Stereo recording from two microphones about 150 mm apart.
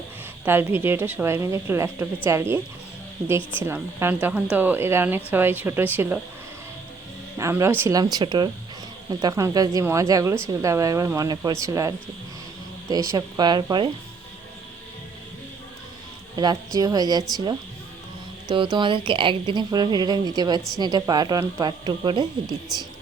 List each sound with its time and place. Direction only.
0.4 s speech: 15° right (ahead or behind)
3.7 s speech: 15° right (ahead or behind)
7.3 s speech: 20° right (ahead or behind)
16.3 s speech: 25° right (ahead or behind)
18.4 s speech: 30° right (ahead or behind)